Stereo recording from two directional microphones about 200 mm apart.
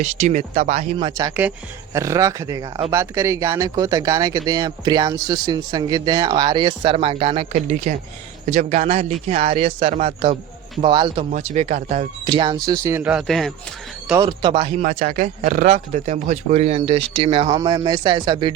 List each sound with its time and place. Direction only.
0.0 s speech: 35° right (ahead or behind)
11.3 s speech: 35° right (ahead or behind)
12.2 s speech: 20° right (ahead or behind); by 13.5 s centre (ahead or behind)
14.2 s speech: 25° right (ahead or behind)
14.8 s speech: 40° right (ahead or behind); by 18.5 s 20° right (ahead or behind)